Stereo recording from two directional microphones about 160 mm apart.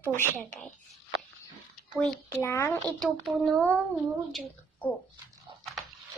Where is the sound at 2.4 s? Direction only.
15° left (ahead or behind).